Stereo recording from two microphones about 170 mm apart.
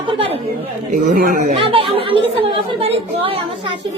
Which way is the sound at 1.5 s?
35° right (ahead or behind).